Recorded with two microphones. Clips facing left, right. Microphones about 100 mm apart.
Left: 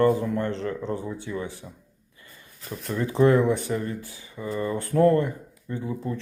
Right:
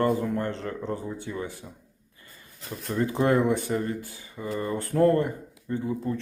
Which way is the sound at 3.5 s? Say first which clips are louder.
Even; 45° right (ahead or behind).